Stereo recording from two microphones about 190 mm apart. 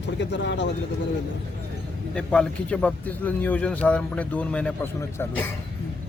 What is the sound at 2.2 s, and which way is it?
A man's voice, 5° left (ahead or behind).